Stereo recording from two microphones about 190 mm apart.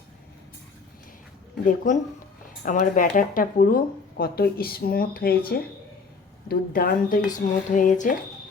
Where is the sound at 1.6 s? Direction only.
40° left (ahead or behind).